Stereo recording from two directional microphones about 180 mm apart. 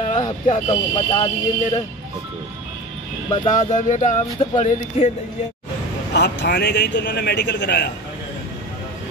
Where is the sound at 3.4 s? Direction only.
45° left (ahead or behind).